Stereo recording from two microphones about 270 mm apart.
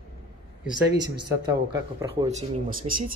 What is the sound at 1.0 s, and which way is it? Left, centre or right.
Speech, centre.